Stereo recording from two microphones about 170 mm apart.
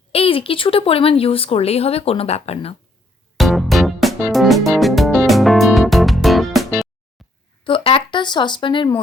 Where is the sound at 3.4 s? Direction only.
Centre (ahead or behind).